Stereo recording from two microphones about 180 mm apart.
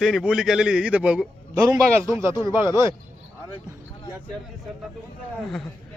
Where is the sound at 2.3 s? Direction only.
20° left (ahead or behind).